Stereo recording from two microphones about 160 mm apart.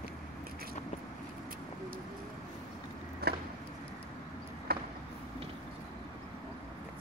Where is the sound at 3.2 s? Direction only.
80° right.